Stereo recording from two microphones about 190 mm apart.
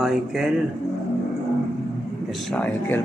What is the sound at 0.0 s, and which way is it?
Speech, centre (ahead or behind).